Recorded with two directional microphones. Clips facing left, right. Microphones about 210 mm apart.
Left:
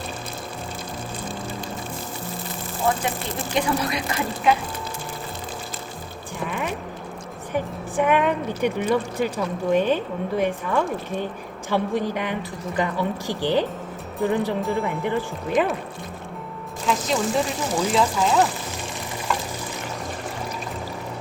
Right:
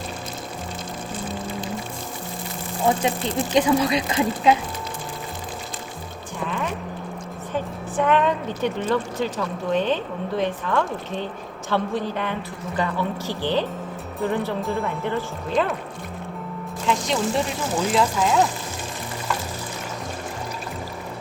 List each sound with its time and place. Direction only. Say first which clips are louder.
3.5 s speech: right 5 dB; 20° right (ahead or behind)
7.5 s a woman's voice: left 1 dB; 15° left (ahead or behind)
16.8 s speech: even; centre (ahead or behind)